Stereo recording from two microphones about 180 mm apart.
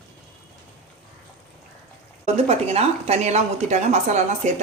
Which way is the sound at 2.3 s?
35° right (ahead or behind).